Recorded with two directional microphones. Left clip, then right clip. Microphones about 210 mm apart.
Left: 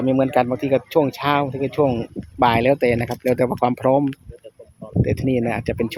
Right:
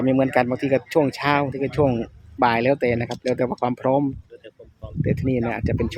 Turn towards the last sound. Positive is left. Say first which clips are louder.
# left 2 dB
turn(degrees=10)  # may be behind; listen again after turning